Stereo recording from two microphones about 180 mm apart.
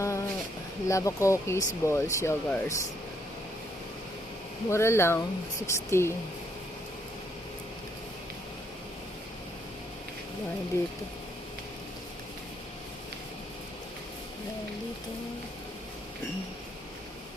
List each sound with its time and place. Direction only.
0.0 s a sound: 15° left (ahead or behind)
0.9 s speech: 15° left (ahead or behind)
4.7 s speech: 15° left (ahead or behind)